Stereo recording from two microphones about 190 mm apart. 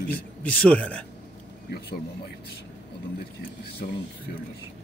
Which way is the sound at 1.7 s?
60° left (ahead or behind).